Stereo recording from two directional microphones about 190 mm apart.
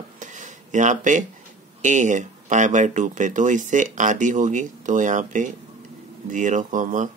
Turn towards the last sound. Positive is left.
turn(degrees=-40)  # may be behind; listen again after turning